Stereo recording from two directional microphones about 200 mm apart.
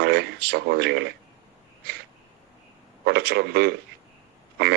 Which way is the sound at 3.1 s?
55° right (ahead or behind).